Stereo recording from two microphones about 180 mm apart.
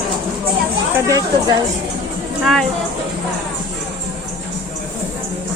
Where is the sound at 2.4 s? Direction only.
Centre (ahead or behind).